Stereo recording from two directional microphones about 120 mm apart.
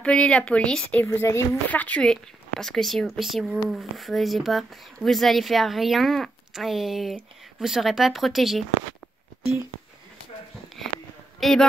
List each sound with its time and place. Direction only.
0.0 s speech: 10° left (ahead or behind)
1.0 s speech: 20° left (ahead or behind); by 8.6 s centre (ahead or behind)
11.3 s speech: centre (ahead or behind)